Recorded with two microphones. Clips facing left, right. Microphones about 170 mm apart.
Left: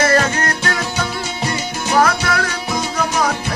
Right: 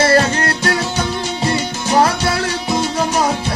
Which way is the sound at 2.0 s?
30° right (ahead or behind).